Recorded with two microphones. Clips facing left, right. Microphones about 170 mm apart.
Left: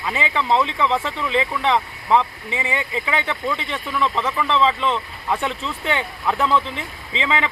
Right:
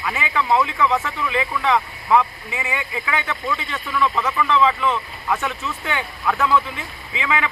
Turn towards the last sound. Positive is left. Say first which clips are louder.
# left 1 dB
turn(degrees=25)  # may be behind; listen again after turning